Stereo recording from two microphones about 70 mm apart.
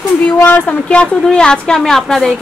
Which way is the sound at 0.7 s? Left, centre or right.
Centre.